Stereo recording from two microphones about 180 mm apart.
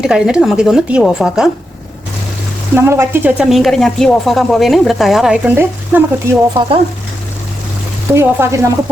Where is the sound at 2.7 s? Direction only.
15° right (ahead or behind).